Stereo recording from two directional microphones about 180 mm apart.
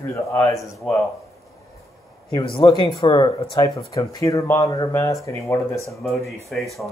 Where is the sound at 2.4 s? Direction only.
25° left (ahead or behind).